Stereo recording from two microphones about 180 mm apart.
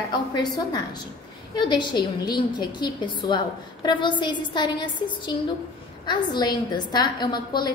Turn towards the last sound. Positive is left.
turn(degrees=25)  # may be behind; listen again after turning